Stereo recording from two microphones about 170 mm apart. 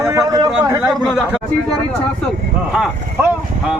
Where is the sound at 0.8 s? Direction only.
Centre (ahead or behind).